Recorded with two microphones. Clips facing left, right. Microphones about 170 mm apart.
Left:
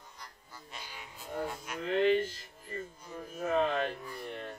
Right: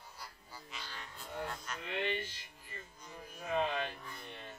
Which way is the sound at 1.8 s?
40° left (ahead or behind).